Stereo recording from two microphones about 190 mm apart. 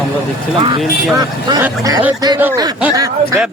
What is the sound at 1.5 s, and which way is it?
A man's voice, 20° right (ahead or behind).